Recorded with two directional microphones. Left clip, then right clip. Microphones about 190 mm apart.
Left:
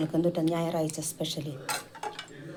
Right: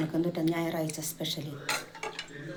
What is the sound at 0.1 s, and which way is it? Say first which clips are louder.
A woman's voice: left 3 dB; 55° left (ahead or behind).